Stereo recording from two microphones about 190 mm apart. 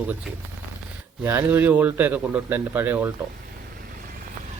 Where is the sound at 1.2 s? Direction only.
10° right (ahead or behind).